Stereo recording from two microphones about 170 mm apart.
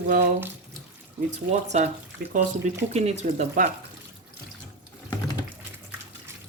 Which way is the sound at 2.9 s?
40° right (ahead or behind).